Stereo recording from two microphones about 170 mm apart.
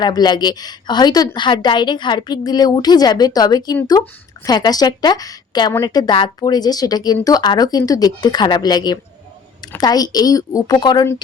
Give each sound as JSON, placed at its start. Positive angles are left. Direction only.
{"t": 0.0, "sound": "a woman's voice", "side_deg": 25}